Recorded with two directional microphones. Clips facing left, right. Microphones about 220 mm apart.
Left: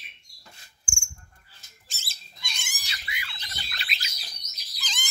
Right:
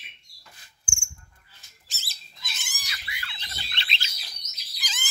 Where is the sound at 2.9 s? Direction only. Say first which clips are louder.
Left 2 dB; 20° left (ahead or behind).